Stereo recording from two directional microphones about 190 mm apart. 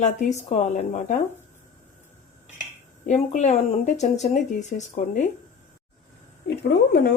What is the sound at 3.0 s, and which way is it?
Speech, 35° left (ahead or behind).